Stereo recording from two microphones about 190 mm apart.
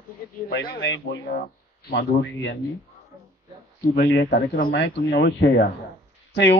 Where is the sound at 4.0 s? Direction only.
65° left (ahead or behind).